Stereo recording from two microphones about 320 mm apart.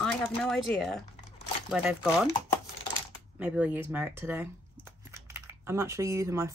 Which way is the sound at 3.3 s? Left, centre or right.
Centre.